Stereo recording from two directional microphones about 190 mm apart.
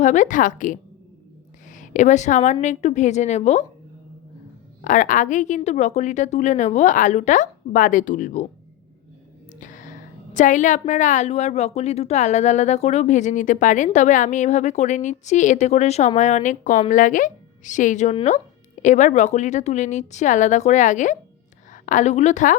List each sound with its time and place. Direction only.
0.0 s a woman's voice: 40° left (ahead or behind)
4.8 s a woman's voice: 40° left (ahead or behind)
9.6 s a sound: 40° left (ahead or behind)
10.3 s a woman's voice: 40° left (ahead or behind)